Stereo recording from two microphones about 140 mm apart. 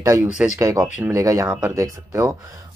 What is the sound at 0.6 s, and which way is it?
Speech, 25° right (ahead or behind).